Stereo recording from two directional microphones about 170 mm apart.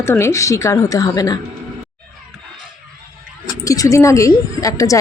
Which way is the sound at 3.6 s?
20° left (ahead or behind).